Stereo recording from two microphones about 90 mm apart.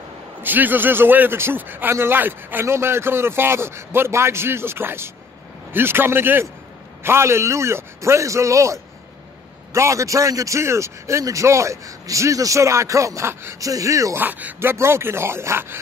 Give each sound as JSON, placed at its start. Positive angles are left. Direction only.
{"t": 0.4, "sound": "a man's voice", "side_deg": -20}
{"t": 13.6, "sound": "a man's voice", "side_deg": -40}
{"t": 14.1, "sound": "a man's voice", "side_deg": -20}